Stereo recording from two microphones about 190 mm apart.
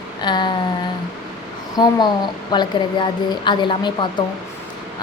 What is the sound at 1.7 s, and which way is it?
A woman's voice, 20° left (ahead or behind).